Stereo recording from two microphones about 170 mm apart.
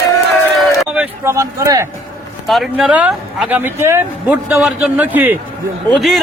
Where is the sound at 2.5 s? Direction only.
Centre (ahead or behind).